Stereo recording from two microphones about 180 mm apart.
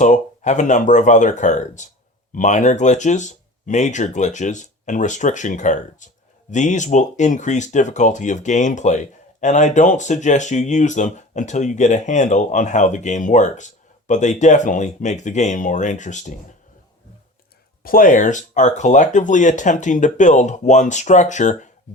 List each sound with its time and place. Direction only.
0.0 s speech: 45° left (ahead or behind)
17.8 s speech: 50° left (ahead or behind)